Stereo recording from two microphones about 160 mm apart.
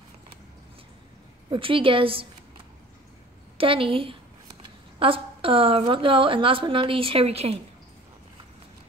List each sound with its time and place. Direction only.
1.5 s a woman's voice: 35° right (ahead or behind)
3.5 s a woman's voice: 35° right (ahead or behind)